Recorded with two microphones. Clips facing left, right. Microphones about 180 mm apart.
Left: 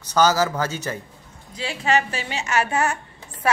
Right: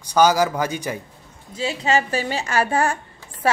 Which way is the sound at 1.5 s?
25° right (ahead or behind).